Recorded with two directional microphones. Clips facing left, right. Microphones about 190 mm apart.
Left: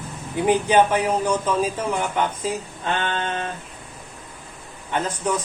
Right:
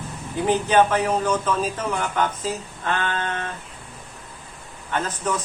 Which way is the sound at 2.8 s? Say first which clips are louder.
Even; 25° left (ahead or behind).